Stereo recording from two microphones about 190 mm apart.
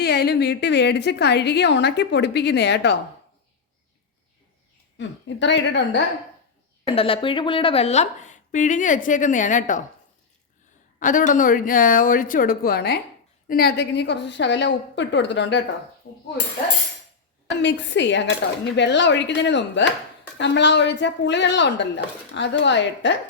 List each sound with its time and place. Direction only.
0.0 s a woman's voice: 55° left (ahead or behind)
4.9 s speech: 70° left (ahead or behind)
6.8 s a woman's voice: 30° left (ahead or behind)
11.0 s speech: 45° left (ahead or behind); by 15.6 s 65° left (ahead or behind)
17.6 s speech: 70° left (ahead or behind)